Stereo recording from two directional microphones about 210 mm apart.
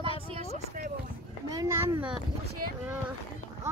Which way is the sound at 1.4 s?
15° right (ahead or behind).